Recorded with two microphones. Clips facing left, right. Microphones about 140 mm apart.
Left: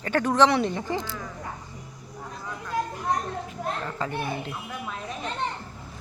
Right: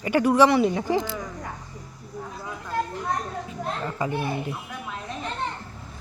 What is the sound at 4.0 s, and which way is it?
Speech, 10° right (ahead or behind).